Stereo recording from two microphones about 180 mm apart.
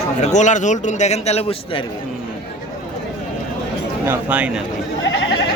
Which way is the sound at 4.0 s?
10° right (ahead or behind).